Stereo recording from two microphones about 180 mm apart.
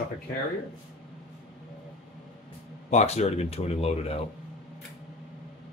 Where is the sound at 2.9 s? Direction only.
40° left (ahead or behind).